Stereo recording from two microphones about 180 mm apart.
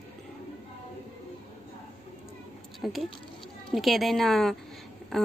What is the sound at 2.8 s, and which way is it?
Speech, centre (ahead or behind).